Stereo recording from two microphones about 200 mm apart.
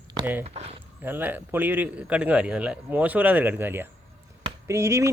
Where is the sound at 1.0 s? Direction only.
10° right (ahead or behind).